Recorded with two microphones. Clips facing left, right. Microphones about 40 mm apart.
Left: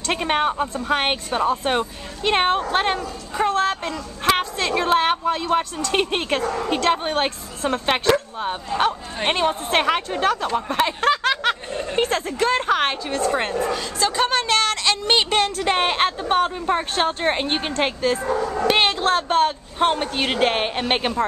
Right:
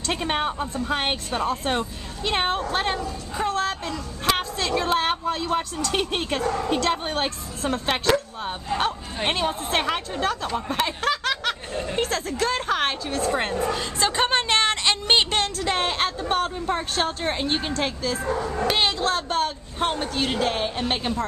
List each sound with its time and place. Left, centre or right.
0.1 s a woman's voice: centre
3.3 s speech: centre
5.9 s a woman's voice: left
10.4 s speech: centre
13.6 s speech: centre
13.9 s speech: right
14.5 s a sound: right
15.6 s a woman's voice: left
18.7 s speech: left
19.0 s speech: centre; by 21.2 s left